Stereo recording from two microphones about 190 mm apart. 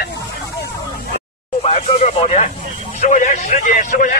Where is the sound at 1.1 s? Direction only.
30° left (ahead or behind).